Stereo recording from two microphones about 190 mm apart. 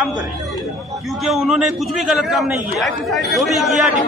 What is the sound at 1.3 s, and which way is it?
Speech, centre (ahead or behind).